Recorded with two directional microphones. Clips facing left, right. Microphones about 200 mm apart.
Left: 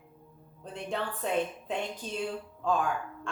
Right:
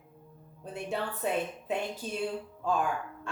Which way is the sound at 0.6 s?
5° right (ahead or behind).